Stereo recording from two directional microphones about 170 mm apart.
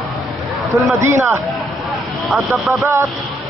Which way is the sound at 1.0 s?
15° right (ahead or behind).